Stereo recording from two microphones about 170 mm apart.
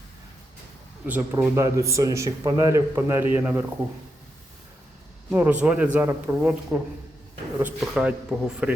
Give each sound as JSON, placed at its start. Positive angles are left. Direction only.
{"t": 1.0, "sound": "speech", "side_deg": -10}
{"t": 5.3, "sound": "speech", "side_deg": -10}